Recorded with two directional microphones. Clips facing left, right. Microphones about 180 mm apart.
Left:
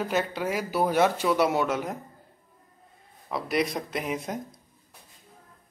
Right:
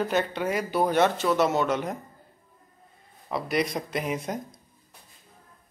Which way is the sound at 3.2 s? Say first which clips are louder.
Even; centre (ahead or behind).